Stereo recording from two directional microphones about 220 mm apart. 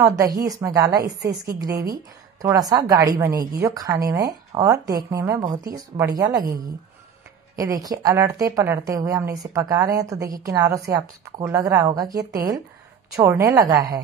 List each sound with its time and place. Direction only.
0.4 s a woman's voice: 15° right (ahead or behind)